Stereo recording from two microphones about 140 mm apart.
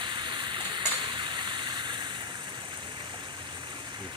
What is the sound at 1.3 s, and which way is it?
Vehicle, 35° right (ahead or behind).